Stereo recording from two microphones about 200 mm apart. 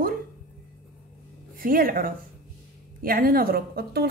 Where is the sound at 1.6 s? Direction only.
45° right (ahead or behind).